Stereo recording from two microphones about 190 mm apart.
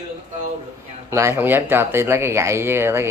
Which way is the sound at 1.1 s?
15° right (ahead or behind).